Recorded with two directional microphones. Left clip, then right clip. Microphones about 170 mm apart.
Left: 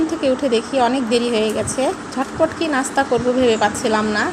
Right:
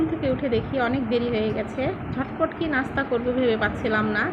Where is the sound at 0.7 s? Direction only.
15° left (ahead or behind).